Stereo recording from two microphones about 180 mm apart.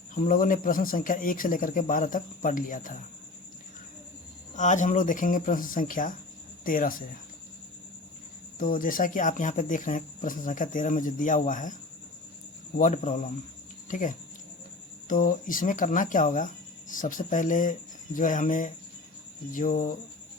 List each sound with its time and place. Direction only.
0.1 s speech: 50° left (ahead or behind)
4.5 s speech: 45° left (ahead or behind)
8.5 s speech: 50° left (ahead or behind)
12.7 s speech: 45° left (ahead or behind)